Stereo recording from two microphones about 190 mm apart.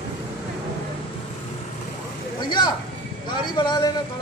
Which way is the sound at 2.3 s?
25° left (ahead or behind).